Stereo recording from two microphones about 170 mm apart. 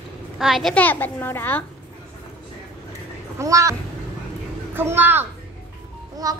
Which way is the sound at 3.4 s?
20° right (ahead or behind).